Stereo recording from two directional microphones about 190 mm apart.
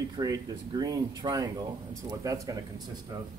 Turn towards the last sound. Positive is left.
turn(degrees=-20)  # may be behind; listen again after turning